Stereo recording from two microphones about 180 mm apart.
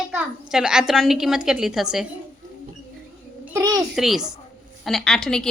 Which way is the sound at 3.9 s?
Centre (ahead or behind).